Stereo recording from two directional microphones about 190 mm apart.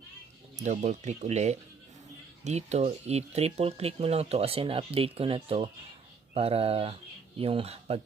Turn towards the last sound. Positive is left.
turn(degrees=-30)  # may be behind; listen again after turning